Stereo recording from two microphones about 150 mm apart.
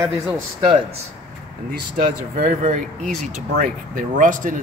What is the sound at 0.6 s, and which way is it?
Speech, 40° right (ahead or behind).